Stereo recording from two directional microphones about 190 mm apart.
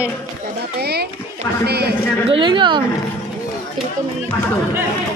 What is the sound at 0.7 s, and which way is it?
Speech, 60° right (ahead or behind).